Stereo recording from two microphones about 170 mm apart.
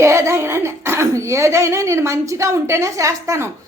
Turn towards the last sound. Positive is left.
turn(degrees=-20)  # may be behind; listen again after turning